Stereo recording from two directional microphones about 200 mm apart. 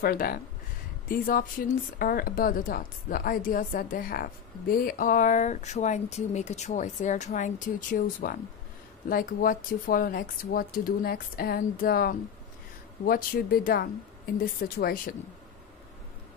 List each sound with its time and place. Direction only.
0.0 s a woman's voice: 45° left (ahead or behind)